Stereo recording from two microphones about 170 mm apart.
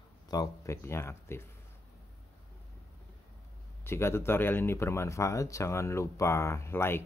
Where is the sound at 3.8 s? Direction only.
15° left (ahead or behind).